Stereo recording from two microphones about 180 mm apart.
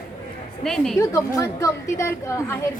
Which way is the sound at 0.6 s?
Centre (ahead or behind).